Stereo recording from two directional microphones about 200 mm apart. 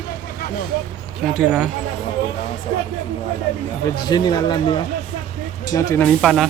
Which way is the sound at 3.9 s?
20° left (ahead or behind).